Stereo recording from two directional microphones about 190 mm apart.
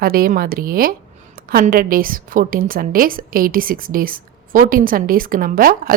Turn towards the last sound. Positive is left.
turn(degrees=-50)  # may be behind; listen again after turning